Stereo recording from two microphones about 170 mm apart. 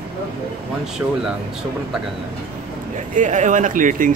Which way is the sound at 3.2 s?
45° right (ahead or behind).